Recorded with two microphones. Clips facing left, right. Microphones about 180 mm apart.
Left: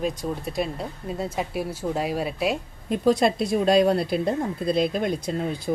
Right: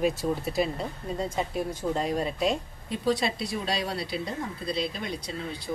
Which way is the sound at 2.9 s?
50° left (ahead or behind).